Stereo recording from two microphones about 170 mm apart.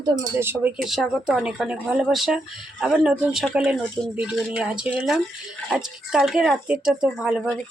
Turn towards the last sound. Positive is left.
turn(degrees=-5)  # may be behind; listen again after turning